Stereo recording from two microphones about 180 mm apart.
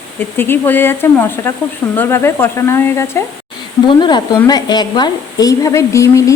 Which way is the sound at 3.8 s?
25° left (ahead or behind).